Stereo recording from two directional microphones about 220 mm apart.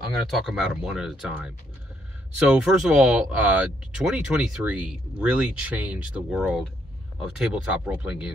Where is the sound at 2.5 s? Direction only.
5° right (ahead or behind).